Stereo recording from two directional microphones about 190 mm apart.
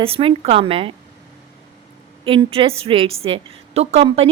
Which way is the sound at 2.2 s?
30° right (ahead or behind).